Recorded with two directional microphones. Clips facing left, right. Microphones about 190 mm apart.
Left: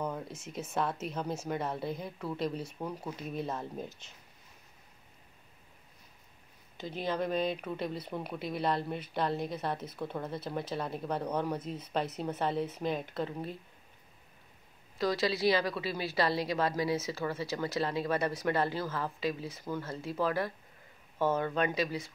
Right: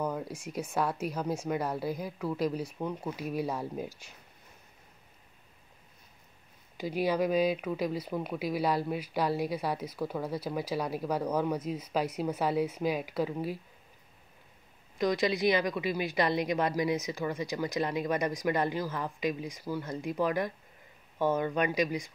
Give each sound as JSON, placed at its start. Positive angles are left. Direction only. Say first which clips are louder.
{"t": 0.0, "sound": "a sound", "louder": "right 3 dB", "side_deg": -5}
{"t": 0.7, "sound": "speech", "louder": "right 2 dB", "side_deg": -5}
{"t": 6.8, "sound": "speech", "louder": "right 5 dB", "side_deg": -10}
{"t": 15.0, "sound": "speech", "louder": "right 2 dB", "side_deg": -20}